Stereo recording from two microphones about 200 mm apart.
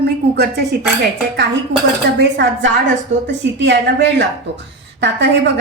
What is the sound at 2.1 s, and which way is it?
A woman's voice, 60° right (ahead or behind).